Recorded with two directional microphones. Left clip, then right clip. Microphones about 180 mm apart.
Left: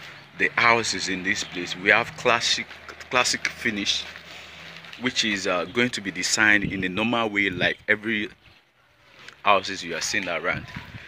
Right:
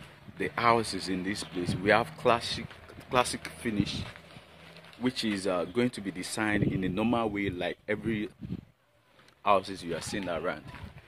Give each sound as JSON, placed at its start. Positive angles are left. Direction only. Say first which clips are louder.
{"t": 0.4, "sound": "speech", "louder": "left 7 dB", "side_deg": -15}
{"t": 5.0, "sound": "speech", "louder": "left 7 dB", "side_deg": -20}
{"t": 9.4, "sound": "speech", "louder": "left 6 dB", "side_deg": -15}